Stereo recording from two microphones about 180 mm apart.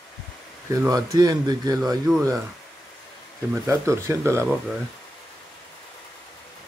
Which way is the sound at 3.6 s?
15° right (ahead or behind).